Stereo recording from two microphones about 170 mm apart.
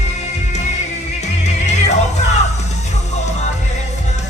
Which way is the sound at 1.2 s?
40° left (ahead or behind).